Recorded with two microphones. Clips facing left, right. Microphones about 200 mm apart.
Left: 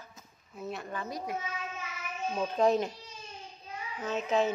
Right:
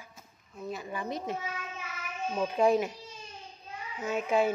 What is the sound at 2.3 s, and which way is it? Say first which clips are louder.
A woman's voice: right 1 dB; 10° right (ahead or behind).